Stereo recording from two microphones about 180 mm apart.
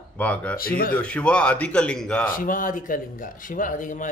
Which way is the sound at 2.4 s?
50° left (ahead or behind).